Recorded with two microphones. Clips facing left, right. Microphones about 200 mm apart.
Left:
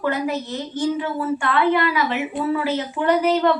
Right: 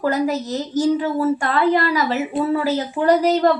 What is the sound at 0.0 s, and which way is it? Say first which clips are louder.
A woman's voice: right 3 dB; 40° right (ahead or behind).